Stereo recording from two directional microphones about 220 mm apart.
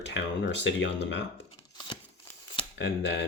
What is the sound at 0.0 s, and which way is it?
Speech, 55° left (ahead or behind).